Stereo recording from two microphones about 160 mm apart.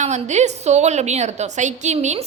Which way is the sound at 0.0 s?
45° right (ahead or behind).